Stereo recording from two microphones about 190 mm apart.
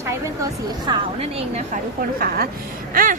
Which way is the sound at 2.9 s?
45° right (ahead or behind).